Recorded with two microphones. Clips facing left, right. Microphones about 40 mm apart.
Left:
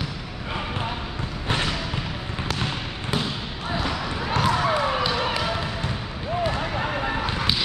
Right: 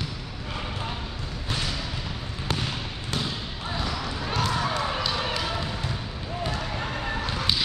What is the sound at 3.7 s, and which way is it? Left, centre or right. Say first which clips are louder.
Basketball bounce: left 4 dB; centre.